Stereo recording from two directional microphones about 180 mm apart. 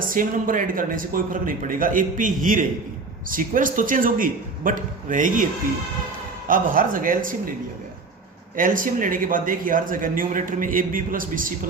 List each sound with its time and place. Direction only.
0.1 s a man's voice: 50° right (ahead or behind)
6.5 s a man's voice: 50° right (ahead or behind)
8.5 s a man's voice: 50° right (ahead or behind)